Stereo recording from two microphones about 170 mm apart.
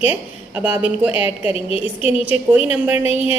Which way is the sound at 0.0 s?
10° right (ahead or behind).